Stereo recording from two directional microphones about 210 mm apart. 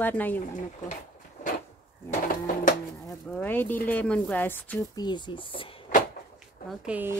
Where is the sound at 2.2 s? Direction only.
40° left (ahead or behind).